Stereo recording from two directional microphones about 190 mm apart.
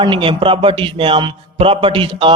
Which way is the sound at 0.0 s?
25° right (ahead or behind).